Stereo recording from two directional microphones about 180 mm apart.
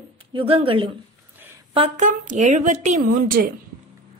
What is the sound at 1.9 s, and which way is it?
A woman's voice, 45° right (ahead or behind).